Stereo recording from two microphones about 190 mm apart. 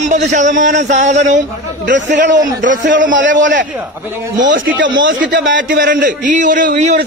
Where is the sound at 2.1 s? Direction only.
70° right (ahead or behind).